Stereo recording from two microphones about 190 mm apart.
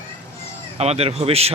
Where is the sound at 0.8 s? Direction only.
35° right (ahead or behind).